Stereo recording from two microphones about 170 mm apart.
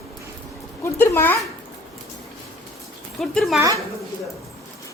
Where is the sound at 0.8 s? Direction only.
15° left (ahead or behind).